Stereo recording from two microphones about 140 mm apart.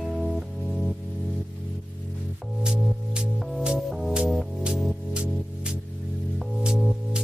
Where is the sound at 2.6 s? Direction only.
5° right (ahead or behind).